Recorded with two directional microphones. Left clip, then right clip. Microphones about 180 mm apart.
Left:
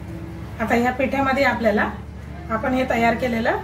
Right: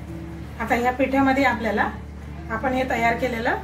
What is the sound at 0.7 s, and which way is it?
A woman's voice, centre (ahead or behind).